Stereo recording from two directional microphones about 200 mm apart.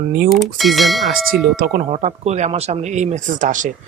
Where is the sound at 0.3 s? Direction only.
Centre (ahead or behind).